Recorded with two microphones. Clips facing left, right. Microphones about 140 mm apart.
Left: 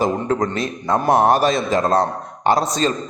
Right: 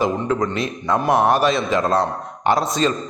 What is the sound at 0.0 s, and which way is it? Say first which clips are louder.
A man's voice: left 1 dB; 40° left (ahead or behind).